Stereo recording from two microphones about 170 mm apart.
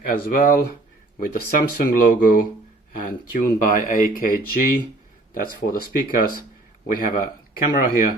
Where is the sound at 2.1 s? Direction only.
55° left (ahead or behind).